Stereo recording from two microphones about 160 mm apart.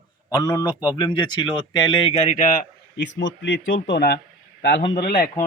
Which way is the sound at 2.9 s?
90° left.